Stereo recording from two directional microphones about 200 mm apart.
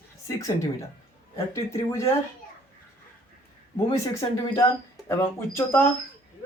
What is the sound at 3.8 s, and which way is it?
Speech, 25° left (ahead or behind).